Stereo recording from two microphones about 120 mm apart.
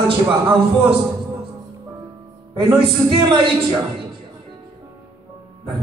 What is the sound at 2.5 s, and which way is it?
Speech, 45° right (ahead or behind).